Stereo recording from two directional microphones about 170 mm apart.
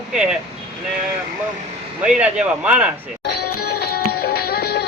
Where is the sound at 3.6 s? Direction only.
70° left (ahead or behind).